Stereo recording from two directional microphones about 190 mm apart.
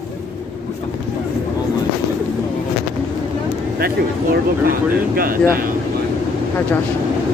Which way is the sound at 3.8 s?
50° right (ahead or behind).